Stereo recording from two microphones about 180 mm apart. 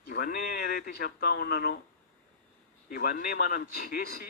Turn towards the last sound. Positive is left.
turn(degrees=55)  # may be behind; listen again after turning